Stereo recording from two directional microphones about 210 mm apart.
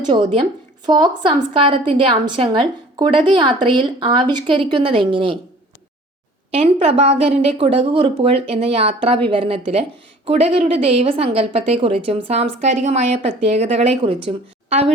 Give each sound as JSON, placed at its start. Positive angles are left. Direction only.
{"t": 0.0, "sound": "a woman's voice", "side_deg": -25}
{"t": 6.5, "sound": "a woman's voice", "side_deg": -30}